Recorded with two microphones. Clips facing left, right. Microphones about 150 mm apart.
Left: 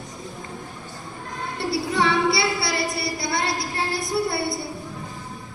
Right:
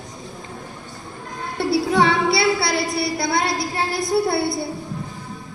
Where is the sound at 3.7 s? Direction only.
60° right (ahead or behind).